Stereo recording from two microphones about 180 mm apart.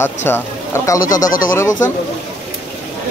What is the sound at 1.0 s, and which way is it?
Speech, 45° left (ahead or behind).